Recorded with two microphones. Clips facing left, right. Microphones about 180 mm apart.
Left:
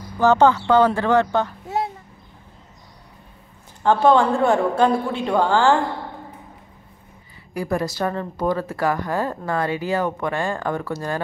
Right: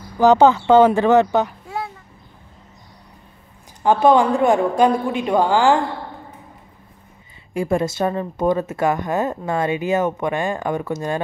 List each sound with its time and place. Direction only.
0.2 s a man's voice: 15° right (ahead or behind)
3.8 s a man's voice: 15° right (ahead or behind)
7.5 s speech: 25° right (ahead or behind)